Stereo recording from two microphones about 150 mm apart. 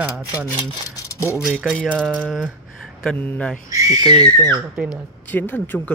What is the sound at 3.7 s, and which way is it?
Speech, 25° right (ahead or behind).